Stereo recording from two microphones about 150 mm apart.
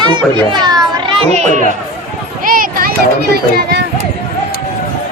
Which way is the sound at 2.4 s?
70° right (ahead or behind).